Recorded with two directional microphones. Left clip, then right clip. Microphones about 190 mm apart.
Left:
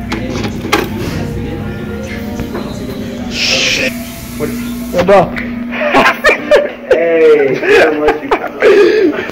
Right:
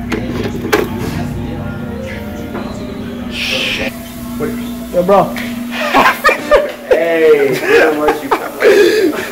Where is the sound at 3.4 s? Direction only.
15° left (ahead or behind).